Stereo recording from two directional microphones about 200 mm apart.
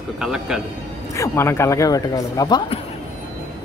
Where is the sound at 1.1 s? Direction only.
15° left (ahead or behind).